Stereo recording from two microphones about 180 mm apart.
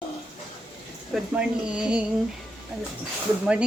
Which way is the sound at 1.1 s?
5° right (ahead or behind).